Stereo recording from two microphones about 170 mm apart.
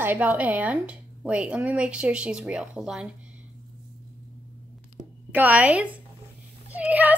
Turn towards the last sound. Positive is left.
turn(degrees=-10)  # may be behind; listen again after turning